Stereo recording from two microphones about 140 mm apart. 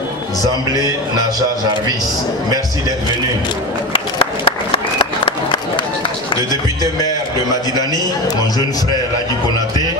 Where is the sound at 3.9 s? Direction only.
40° left (ahead or behind).